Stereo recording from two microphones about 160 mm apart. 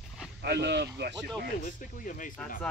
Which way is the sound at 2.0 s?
55° left (ahead or behind).